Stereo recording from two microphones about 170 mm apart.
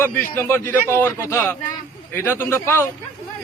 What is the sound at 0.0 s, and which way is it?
A man's voice, 15° left (ahead or behind).